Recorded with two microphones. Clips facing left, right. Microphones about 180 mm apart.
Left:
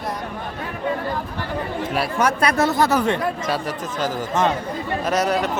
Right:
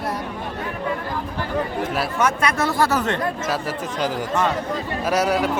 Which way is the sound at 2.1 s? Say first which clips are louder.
Left 3 dB; 30° left (ahead or behind).